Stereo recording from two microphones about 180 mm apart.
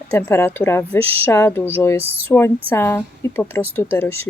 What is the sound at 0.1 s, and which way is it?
Speech, 15° left (ahead or behind).